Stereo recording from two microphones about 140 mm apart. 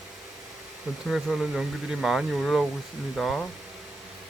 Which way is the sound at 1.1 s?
5° right (ahead or behind).